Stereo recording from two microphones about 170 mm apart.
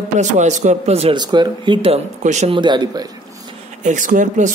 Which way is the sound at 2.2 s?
45° right (ahead or behind).